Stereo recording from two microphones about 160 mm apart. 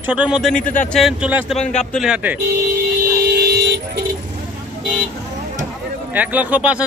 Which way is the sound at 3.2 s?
80° right.